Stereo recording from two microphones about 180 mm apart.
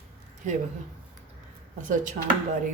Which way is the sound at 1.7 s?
45° right (ahead or behind).